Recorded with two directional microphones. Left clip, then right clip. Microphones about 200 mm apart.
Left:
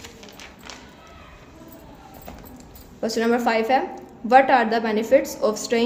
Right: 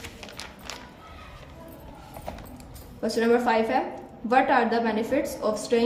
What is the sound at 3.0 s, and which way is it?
A woman's voice, 35° left (ahead or behind).